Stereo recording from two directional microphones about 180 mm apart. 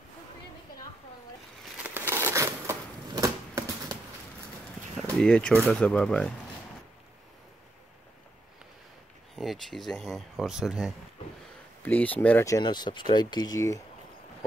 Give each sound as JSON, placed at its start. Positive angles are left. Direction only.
{"t": 1.8, "sound": "a sound", "side_deg": -10}
{"t": 5.2, "sound": "speech", "side_deg": 5}
{"t": 9.3, "sound": "speech", "side_deg": 0}
{"t": 11.8, "sound": "speech", "side_deg": 10}